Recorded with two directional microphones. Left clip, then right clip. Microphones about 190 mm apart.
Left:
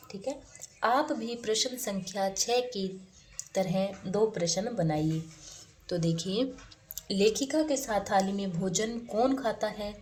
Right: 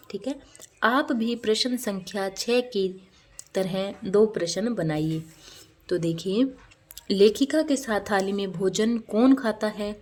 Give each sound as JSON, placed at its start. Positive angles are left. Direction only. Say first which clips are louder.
{"t": 0.1, "sound": "a woman's voice", "louder": "right 4 dB", "side_deg": -50}
{"t": 7.1, "sound": "a woman's voice", "louder": "right 7 dB", "side_deg": -45}